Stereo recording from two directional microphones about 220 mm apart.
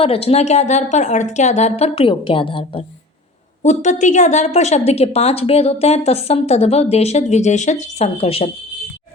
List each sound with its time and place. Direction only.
0.0 s a woman's voice: 25° left (ahead or behind)